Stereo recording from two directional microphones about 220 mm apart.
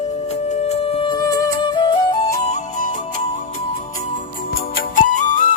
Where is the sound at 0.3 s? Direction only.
30° left (ahead or behind).